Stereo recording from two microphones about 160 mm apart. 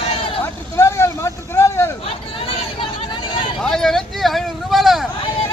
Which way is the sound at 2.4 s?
35° left (ahead or behind).